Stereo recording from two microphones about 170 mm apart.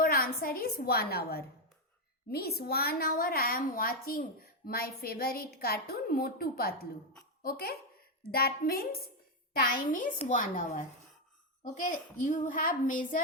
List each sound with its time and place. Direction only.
0.0 s a woman's voice: 60° left (ahead or behind)